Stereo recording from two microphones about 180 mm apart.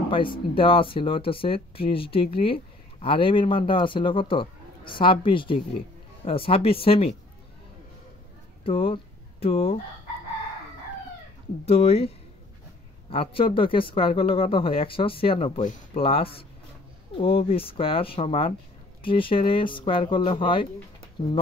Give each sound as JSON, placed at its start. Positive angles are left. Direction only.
{"t": 0.1, "sound": "speech", "side_deg": 30}
{"t": 8.6, "sound": "speech", "side_deg": 30}
{"t": 11.6, "sound": "speech", "side_deg": 35}
{"t": 13.1, "sound": "speech", "side_deg": 30}